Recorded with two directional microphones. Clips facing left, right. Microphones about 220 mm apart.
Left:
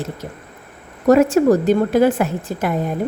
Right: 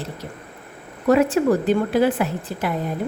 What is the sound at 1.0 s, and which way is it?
A woman's voice, 45° left (ahead or behind).